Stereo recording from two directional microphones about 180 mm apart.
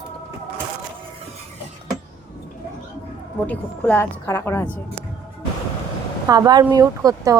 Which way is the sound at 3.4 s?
10° left (ahead or behind).